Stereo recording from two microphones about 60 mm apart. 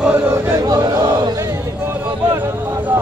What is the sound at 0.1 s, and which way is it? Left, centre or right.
Chant, right.